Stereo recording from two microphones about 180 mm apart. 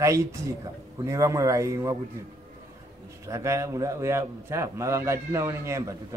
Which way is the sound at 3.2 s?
15° right (ahead or behind).